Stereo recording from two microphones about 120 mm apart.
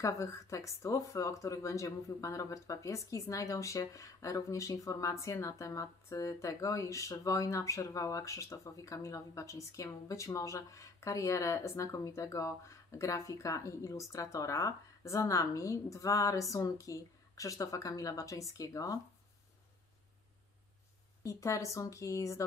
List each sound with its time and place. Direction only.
0.0 s speech: 25° left (ahead or behind)
21.2 s speech: 25° left (ahead or behind)